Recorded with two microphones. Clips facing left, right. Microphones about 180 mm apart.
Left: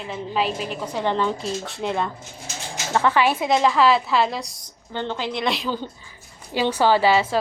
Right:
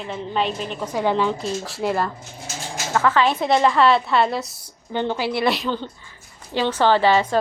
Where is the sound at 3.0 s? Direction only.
20° left (ahead or behind).